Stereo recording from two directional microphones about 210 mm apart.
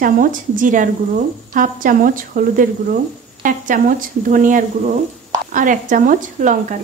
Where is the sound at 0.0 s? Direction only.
40° right (ahead or behind).